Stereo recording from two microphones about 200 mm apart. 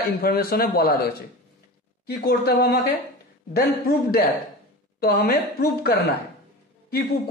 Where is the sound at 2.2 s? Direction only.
55° left (ahead or behind).